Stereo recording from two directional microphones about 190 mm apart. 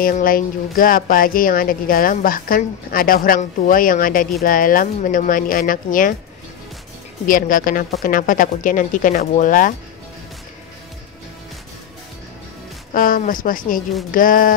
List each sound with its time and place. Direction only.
0.0 s a woman's voice: 50° left (ahead or behind)
7.2 s a woman's voice: 45° left (ahead or behind)
12.9 s a woman's voice: 45° left (ahead or behind)